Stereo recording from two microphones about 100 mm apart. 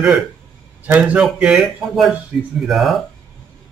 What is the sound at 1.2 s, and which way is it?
Speech, 5° right (ahead or behind).